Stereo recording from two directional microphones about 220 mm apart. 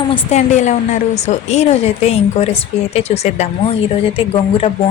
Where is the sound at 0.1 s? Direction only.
30° left (ahead or behind).